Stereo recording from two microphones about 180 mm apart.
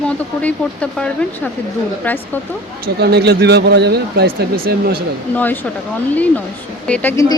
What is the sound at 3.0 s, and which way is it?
Speech, 65° right (ahead or behind).